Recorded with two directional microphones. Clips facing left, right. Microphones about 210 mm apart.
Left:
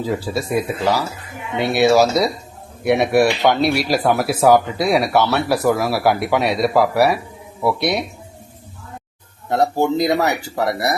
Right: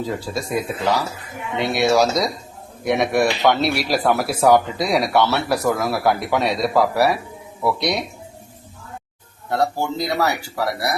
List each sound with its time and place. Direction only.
0.0 s speech: 5° left (ahead or behind)
9.5 s speech: 20° left (ahead or behind)